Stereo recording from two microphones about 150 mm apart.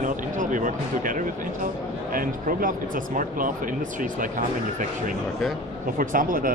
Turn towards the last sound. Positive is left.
turn(degrees=-65)  # may be behind; listen again after turning